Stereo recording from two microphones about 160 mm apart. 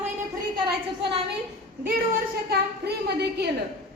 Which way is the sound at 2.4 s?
85° right.